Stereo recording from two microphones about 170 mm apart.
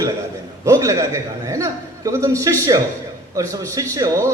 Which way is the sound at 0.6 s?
20° right (ahead or behind).